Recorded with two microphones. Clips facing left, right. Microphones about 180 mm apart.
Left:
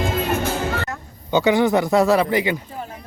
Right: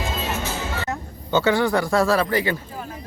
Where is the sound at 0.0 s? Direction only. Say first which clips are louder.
Left 5 dB; 55° left (ahead or behind).